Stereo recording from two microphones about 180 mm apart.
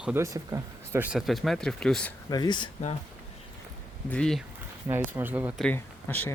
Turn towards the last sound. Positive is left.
turn(degrees=10)  # may be behind; listen again after turning